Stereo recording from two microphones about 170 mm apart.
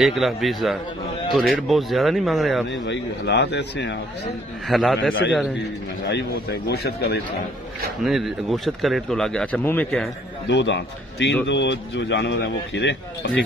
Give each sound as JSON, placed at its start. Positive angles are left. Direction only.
{"t": 0.0, "sound": "speech", "side_deg": 0}
{"t": 2.9, "sound": "speech", "side_deg": 90}
{"t": 4.6, "sound": "speech", "side_deg": 0}
{"t": 6.0, "sound": "speech", "side_deg": 80}
{"t": 8.0, "sound": "speech", "side_deg": 0}
{"t": 10.5, "sound": "speech", "side_deg": 90}